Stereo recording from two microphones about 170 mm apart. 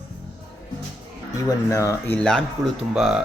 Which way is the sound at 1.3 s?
20° left (ahead or behind).